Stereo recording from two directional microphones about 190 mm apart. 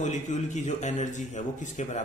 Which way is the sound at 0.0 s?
40° left (ahead or behind).